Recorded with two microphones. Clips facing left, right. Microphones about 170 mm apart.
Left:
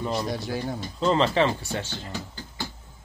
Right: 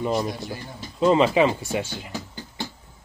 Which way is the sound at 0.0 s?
15° right (ahead or behind).